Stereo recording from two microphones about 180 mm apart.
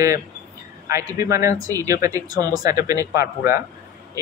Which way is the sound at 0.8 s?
15° right (ahead or behind).